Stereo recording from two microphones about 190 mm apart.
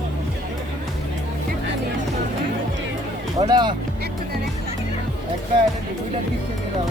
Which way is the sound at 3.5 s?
25° right (ahead or behind).